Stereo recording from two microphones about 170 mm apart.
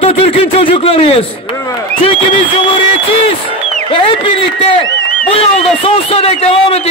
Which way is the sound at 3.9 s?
30° left (ahead or behind).